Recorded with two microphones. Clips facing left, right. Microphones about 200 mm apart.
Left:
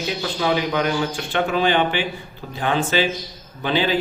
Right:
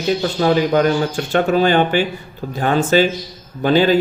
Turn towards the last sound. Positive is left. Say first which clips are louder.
# right 7 dB
turn(degrees=-45)  # may be behind; listen again after turning